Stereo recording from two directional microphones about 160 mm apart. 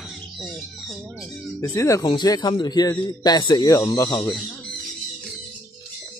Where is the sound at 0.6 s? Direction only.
Centre (ahead or behind).